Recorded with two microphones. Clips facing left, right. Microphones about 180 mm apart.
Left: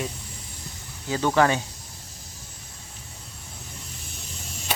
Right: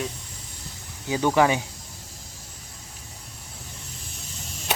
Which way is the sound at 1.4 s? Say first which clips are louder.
Even; 10° right (ahead or behind).